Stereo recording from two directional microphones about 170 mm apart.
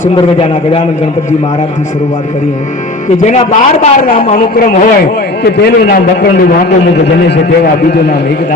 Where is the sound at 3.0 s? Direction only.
45° left (ahead or behind).